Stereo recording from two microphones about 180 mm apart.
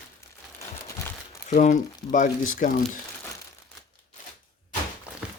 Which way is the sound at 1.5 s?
45° left (ahead or behind).